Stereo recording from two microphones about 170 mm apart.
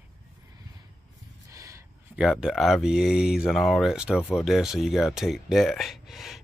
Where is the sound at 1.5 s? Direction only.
20° right (ahead or behind).